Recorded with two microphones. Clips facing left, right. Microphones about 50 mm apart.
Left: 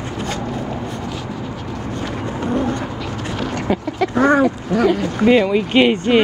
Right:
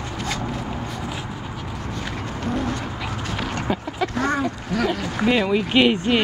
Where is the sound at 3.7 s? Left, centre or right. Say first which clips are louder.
Left 6 dB; centre.